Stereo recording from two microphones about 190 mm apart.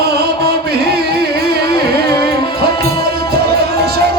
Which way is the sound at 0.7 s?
55° right (ahead or behind).